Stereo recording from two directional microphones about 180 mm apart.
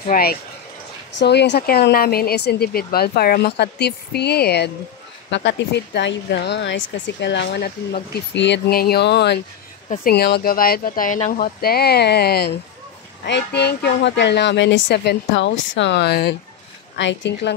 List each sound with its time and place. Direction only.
0.0 s speech: 55° left (ahead or behind)
1.1 s speech: 70° left (ahead or behind)
16.9 s a woman's voice: 90° left